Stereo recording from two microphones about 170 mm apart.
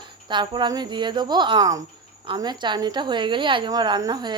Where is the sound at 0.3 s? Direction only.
25° right (ahead or behind).